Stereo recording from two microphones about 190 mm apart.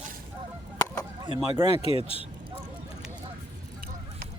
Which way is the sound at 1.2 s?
25° right (ahead or behind).